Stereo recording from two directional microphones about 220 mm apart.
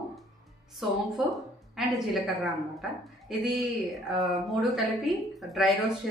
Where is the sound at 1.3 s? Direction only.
Centre (ahead or behind).